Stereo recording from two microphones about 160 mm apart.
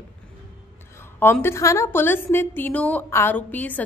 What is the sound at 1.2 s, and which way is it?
A woman's voice, 15° left (ahead or behind).